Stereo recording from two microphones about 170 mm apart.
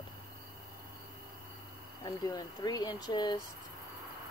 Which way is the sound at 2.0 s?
25° left (ahead or behind).